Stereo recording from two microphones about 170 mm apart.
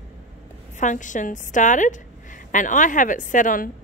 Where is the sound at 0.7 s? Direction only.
45° left (ahead or behind).